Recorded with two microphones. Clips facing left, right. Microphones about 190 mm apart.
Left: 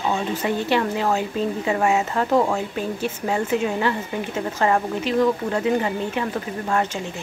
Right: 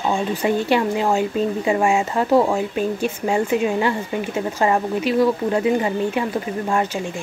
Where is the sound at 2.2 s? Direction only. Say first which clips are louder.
Right 5 dB; 10° right (ahead or behind).